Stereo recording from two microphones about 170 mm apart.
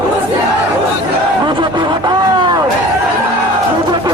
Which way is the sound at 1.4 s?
30° right (ahead or behind).